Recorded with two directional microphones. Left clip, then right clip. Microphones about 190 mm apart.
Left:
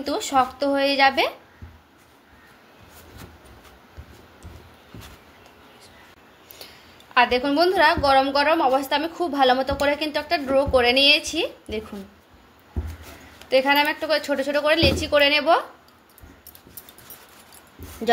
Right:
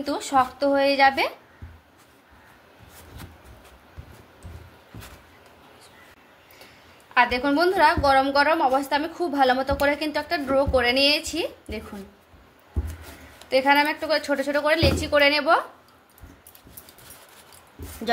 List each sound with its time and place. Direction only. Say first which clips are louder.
0.0 s a woman's voice: left 1 dB; 20° left (ahead or behind)
7.2 s a woman's voice: left 2 dB; 20° left (ahead or behind)
13.5 s a woman's voice: left 1 dB; 15° left (ahead or behind)